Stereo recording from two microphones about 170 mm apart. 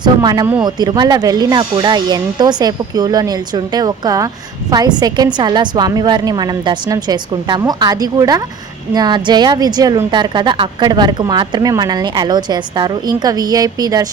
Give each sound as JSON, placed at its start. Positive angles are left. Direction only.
{"t": 0.0, "sound": "a woman's voice", "side_deg": -25}